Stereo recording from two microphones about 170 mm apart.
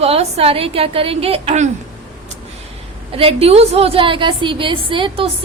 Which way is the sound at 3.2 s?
35° right (ahead or behind).